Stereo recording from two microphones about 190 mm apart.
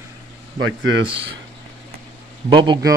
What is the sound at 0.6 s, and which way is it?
Speech, 90° right.